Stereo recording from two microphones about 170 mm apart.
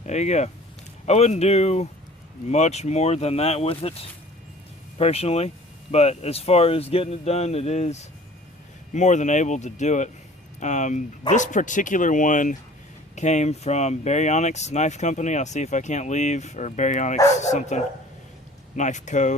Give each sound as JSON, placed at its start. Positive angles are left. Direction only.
{"t": 0.0, "sound": "speech", "side_deg": 40}